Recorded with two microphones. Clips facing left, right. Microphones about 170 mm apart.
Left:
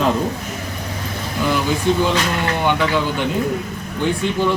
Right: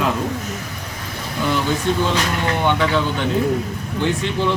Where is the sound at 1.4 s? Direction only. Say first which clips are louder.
Left 1 dB; 5° left (ahead or behind).